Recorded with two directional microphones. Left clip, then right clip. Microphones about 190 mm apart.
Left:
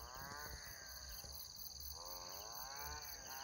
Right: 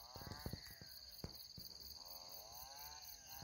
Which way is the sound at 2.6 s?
25° right (ahead or behind).